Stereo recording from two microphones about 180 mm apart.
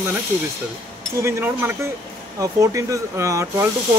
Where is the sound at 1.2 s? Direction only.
10° right (ahead or behind).